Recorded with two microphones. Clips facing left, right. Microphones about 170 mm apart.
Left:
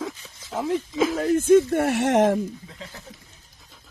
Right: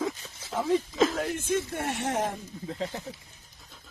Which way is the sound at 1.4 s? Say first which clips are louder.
Left 13 dB; 65° left (ahead or behind).